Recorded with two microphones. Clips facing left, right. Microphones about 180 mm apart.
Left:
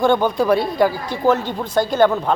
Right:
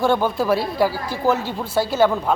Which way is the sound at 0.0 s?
5° right (ahead or behind).